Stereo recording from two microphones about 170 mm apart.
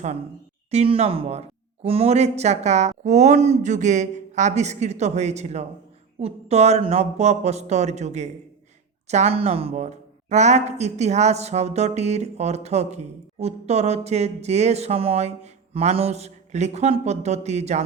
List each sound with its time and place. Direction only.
0.7 s speech: 40° right (ahead or behind)